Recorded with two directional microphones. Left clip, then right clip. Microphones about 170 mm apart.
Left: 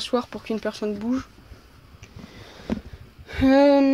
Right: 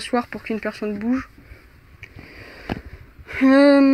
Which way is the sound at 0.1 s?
15° left (ahead or behind).